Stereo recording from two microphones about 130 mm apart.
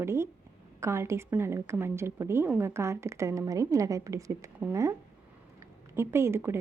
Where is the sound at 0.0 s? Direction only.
20° right (ahead or behind).